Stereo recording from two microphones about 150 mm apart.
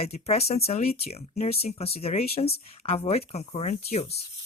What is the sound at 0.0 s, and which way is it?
Speech, 45° left (ahead or behind).